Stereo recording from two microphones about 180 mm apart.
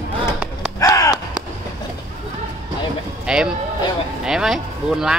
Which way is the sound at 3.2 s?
5° right (ahead or behind).